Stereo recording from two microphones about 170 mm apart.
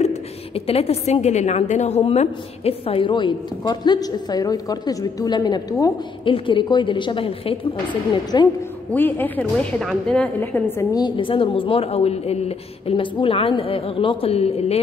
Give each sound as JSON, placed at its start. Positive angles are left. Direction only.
{"t": 0.7, "sound": "a woman's voice", "side_deg": 35}
{"t": 8.9, "sound": "a woman's voice", "side_deg": 10}